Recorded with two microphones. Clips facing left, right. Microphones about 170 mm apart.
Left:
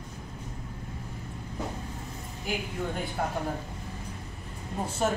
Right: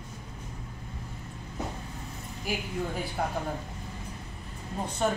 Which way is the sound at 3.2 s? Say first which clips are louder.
Even; centre (ahead or behind).